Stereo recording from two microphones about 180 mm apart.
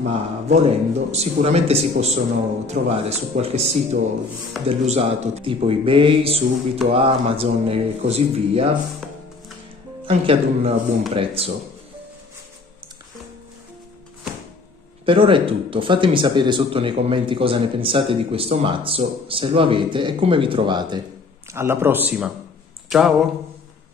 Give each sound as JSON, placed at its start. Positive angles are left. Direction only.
{"t": 0.5, "sound": "speech", "side_deg": -35}
{"t": 9.0, "sound": "music", "side_deg": 0}
{"t": 10.0, "sound": "speech", "side_deg": -30}
{"t": 15.0, "sound": "speech", "side_deg": -30}
{"t": 21.5, "sound": "a man's voice", "side_deg": -15}